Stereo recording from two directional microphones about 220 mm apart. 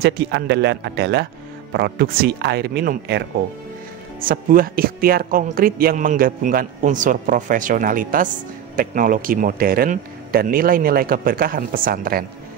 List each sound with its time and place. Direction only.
0.0 s speech: 50° right (ahead or behind)